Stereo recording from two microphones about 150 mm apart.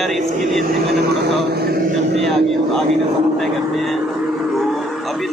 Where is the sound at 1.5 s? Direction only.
90° right.